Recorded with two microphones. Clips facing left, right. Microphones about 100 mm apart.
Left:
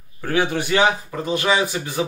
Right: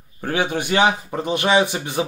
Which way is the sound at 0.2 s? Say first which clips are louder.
Left 1 dB; 20° right (ahead or behind).